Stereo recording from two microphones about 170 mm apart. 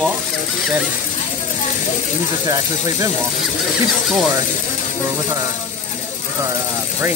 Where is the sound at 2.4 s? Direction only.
20° right (ahead or behind).